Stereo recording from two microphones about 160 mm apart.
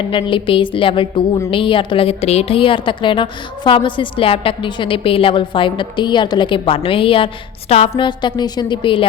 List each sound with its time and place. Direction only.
0.0 s a woman's voice: 30° left (ahead or behind)